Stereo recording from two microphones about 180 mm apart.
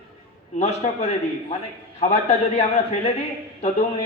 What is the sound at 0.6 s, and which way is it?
Speech, 35° left (ahead or behind).